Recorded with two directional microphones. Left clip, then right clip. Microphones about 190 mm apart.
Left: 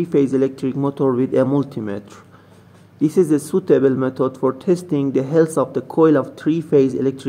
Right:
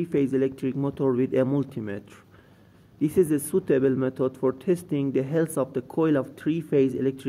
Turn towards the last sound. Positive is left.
turn(degrees=-30)  # may be behind; listen again after turning